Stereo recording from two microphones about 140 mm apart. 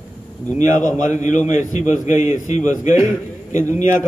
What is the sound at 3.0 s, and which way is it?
Speech, 20° right (ahead or behind).